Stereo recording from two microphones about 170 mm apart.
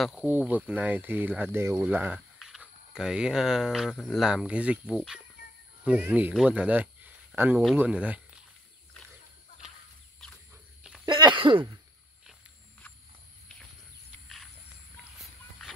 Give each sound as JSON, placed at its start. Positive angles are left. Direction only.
{"t": 0.0, "sound": "speech", "side_deg": -5}
{"t": 10.2, "sound": "cricket", "side_deg": 5}
{"t": 11.1, "sound": "throat clearing", "side_deg": -25}